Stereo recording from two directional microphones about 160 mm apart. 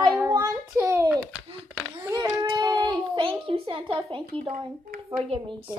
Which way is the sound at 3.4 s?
35° right (ahead or behind).